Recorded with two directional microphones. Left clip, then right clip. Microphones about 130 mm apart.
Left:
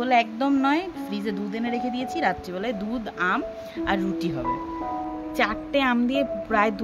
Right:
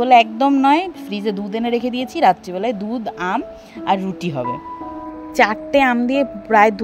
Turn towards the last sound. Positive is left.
turn(degrees=-50)  # may be behind; listen again after turning